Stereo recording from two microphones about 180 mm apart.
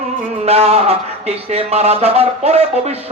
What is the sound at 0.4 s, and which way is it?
Music, 35° right (ahead or behind).